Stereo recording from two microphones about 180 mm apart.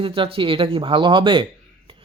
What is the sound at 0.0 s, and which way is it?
Speech, 30° right (ahead or behind).